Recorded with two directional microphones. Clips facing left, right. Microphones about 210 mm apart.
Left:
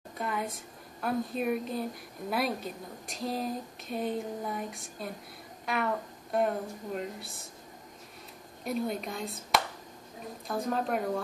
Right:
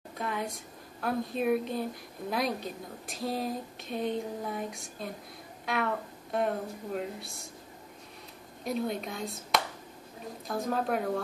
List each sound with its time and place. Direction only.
0.2 s a sound: centre (ahead or behind)
1.0 s a woman's voice: centre (ahead or behind)
5.7 s music: centre (ahead or behind)
7.0 s a woman's voice: centre (ahead or behind)
8.6 s a woman's voice: centre (ahead or behind)